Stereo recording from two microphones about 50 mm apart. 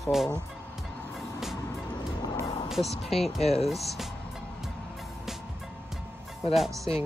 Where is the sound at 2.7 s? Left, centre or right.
Centre.